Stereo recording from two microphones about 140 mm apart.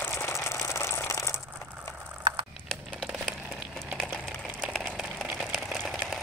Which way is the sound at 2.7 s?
Centre (ahead or behind).